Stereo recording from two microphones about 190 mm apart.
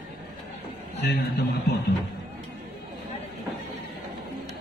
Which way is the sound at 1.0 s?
65° left (ahead or behind).